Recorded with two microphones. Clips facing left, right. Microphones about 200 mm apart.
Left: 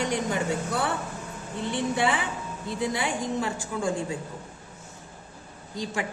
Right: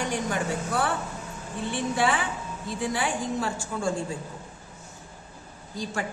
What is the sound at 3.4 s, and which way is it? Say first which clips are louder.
Speech: even; 20° left (ahead or behind).